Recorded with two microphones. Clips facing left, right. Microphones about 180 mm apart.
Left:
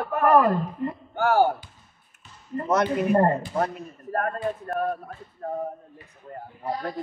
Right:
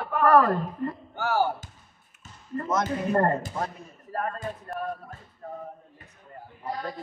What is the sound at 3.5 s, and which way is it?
Speech, 60° left (ahead or behind).